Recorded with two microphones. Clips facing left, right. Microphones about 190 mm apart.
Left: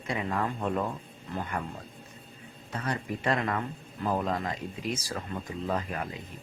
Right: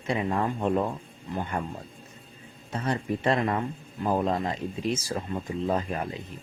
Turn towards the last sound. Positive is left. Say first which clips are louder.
# right 4 dB
turn(degrees=-30)  # may be behind; listen again after turning